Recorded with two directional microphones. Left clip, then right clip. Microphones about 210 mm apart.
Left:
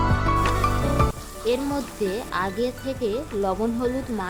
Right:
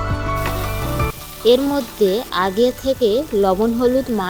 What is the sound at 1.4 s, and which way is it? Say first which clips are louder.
A woman's voice: right 10 dB; 20° right (ahead or behind).